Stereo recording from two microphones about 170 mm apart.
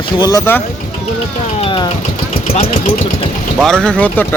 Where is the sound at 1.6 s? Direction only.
30° left (ahead or behind).